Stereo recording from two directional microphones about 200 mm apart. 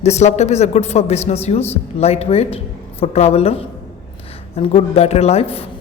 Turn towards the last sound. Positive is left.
turn(degrees=30)  # may be behind; listen again after turning